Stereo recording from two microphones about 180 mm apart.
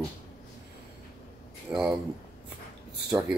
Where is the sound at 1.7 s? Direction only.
5° right (ahead or behind).